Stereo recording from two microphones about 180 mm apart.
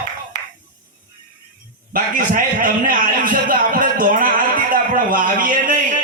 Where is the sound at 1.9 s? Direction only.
50° right (ahead or behind).